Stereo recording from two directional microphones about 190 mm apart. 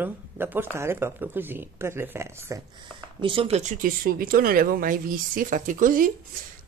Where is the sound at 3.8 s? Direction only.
50° right (ahead or behind).